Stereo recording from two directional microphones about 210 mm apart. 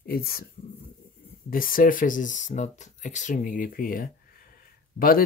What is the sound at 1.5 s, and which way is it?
Speech, 40° left (ahead or behind).